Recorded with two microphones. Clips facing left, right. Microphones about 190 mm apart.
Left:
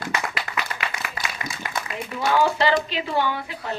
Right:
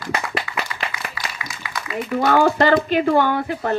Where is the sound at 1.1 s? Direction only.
50° left (ahead or behind).